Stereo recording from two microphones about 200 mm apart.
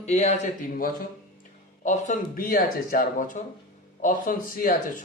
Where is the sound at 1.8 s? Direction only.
40° left (ahead or behind).